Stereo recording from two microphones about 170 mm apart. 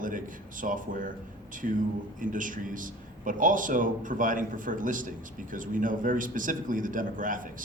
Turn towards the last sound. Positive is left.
turn(degrees=-50)  # may be behind; listen again after turning